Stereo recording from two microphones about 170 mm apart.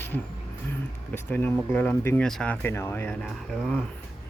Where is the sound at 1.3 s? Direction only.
10° left (ahead or behind).